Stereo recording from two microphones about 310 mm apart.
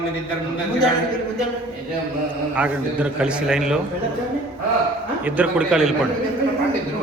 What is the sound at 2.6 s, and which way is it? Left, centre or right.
A man's voice, centre.